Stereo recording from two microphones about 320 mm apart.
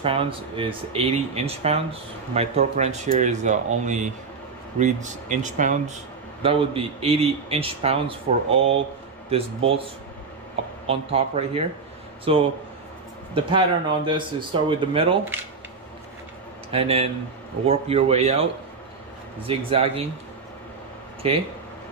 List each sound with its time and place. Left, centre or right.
0.0 s a man's voice: centre
10.9 s a man's voice: centre
16.7 s a man's voice: centre
19.4 s a man's voice: centre